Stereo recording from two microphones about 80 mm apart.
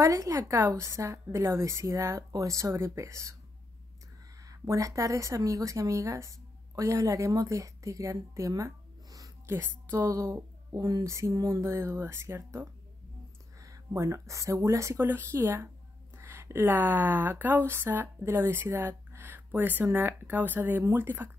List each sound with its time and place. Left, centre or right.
0.0 s a woman's voice: right
4.4 s speech: right
9.5 s a woman's voice: right